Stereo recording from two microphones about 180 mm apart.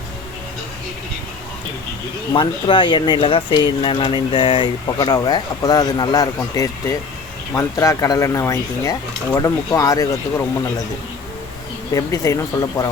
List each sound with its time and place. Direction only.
2.3 s speech: 30° left (ahead or behind)
11.9 s speech: 20° left (ahead or behind)